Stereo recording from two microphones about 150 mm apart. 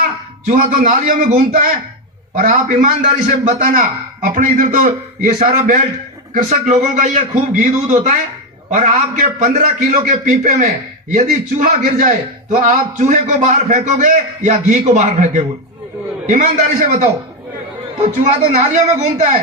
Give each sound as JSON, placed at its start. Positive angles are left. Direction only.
{"t": 0.0, "sound": "a man's voice", "side_deg": -60}
{"t": 2.3, "sound": "a man's voice", "side_deg": -60}
{"t": 6.3, "sound": "a man's voice", "side_deg": -50}